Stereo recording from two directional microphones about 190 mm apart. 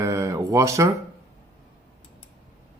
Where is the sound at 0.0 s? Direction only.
15° right (ahead or behind).